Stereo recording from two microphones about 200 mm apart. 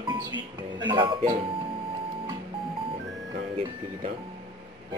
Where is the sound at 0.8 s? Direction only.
20° right (ahead or behind).